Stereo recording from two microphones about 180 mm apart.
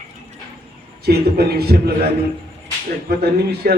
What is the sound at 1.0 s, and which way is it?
A man's voice, 60° right (ahead or behind).